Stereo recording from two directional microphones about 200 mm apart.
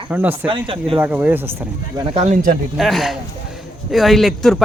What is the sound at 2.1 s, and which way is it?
Speech, 35° right (ahead or behind).